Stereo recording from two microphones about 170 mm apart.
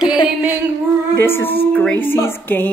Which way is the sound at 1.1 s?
15° left (ahead or behind).